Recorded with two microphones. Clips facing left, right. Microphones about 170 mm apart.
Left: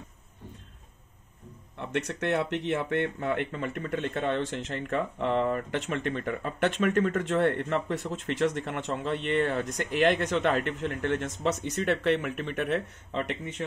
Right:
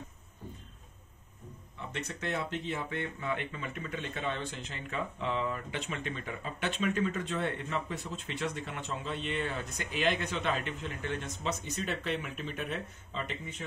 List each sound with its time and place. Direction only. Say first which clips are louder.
1.8 s speech: left 8 dB; 75° left (ahead or behind); by 4.4 s 55° left (ahead or behind)
4.4 s speech: left 9 dB; 80° left
4.8 s speech: left 6 dB; 60° left (ahead or behind)